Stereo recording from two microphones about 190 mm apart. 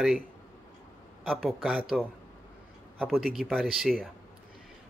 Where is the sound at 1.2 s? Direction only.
Centre (ahead or behind).